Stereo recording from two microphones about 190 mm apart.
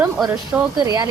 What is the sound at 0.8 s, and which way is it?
Speech, 20° right (ahead or behind).